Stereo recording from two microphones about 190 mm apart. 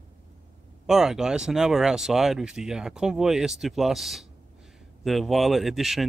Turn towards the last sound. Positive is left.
turn(degrees=0)  # may be behind; listen again after turning